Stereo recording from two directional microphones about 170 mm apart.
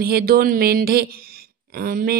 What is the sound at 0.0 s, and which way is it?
Speech, 65° right (ahead or behind).